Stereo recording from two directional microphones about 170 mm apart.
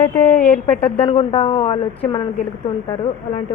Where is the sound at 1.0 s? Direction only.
35° left (ahead or behind).